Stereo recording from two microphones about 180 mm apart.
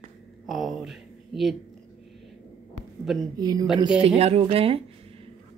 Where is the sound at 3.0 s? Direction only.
Centre (ahead or behind).